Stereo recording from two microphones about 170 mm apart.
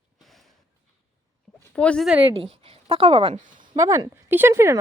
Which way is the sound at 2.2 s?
35° right (ahead or behind).